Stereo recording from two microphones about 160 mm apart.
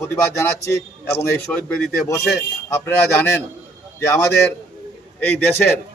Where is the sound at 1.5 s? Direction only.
5° left (ahead or behind).